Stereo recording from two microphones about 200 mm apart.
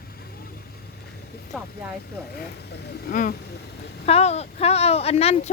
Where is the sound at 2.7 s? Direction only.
55° left (ahead or behind).